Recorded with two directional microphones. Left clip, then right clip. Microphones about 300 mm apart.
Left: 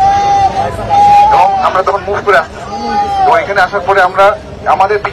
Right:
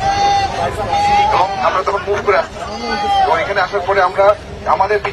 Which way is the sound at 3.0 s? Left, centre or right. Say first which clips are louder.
Left 2 dB; centre.